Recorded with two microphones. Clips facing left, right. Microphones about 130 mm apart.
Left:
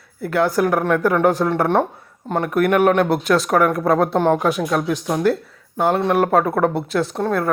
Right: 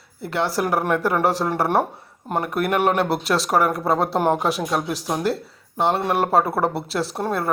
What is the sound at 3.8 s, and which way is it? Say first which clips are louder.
Speech: left 4 dB; 30° right (ahead or behind).